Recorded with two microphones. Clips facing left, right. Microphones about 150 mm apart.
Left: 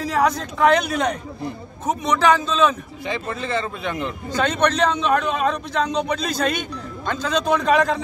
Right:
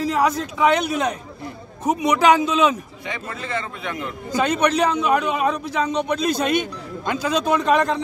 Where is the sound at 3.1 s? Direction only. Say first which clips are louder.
Left 4 dB; 30° left (ahead or behind).